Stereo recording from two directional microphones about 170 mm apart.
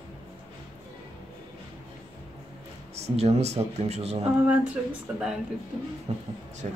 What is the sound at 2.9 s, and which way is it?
Speech, 40° right (ahead or behind).